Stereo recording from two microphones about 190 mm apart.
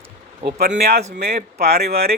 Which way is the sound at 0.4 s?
55° right (ahead or behind).